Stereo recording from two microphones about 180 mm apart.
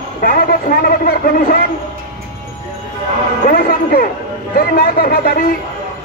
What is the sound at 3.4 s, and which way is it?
A man's voice, 50° left (ahead or behind).